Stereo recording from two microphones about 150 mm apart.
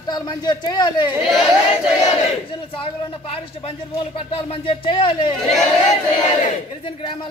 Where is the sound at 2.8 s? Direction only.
40° left (ahead or behind).